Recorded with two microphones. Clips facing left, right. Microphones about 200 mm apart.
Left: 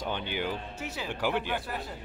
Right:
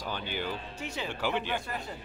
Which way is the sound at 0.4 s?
10° left (ahead or behind).